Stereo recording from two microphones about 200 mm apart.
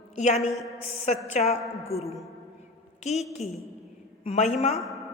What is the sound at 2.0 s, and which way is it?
Speech, centre (ahead or behind).